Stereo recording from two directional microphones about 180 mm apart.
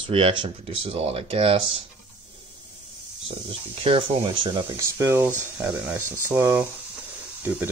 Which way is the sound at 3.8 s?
30° right (ahead or behind).